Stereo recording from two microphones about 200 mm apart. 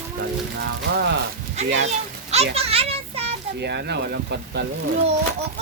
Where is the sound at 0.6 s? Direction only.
55° right (ahead or behind).